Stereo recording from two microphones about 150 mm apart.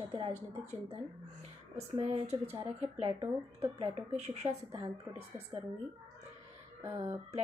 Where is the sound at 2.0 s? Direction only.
40° right (ahead or behind).